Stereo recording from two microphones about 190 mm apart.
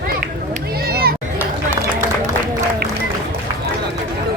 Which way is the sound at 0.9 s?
55° right (ahead or behind).